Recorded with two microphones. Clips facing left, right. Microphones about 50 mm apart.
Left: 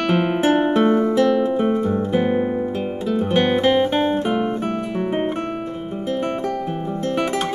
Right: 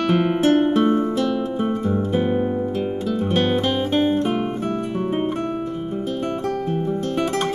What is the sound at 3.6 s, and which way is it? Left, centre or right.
Music, left.